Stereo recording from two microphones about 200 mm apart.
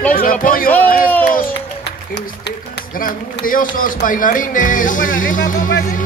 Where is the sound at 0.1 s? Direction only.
45° left (ahead or behind).